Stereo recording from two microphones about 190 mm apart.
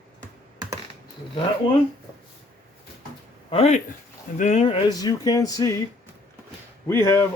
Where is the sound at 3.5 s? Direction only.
35° left (ahead or behind).